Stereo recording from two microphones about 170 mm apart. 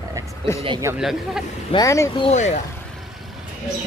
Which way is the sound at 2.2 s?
40° left (ahead or behind).